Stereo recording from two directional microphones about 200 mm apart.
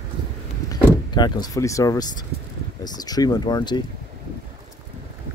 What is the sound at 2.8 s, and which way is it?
Speech, 20° left (ahead or behind).